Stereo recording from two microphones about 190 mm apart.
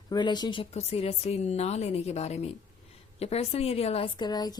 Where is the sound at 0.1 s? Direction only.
25° left (ahead or behind).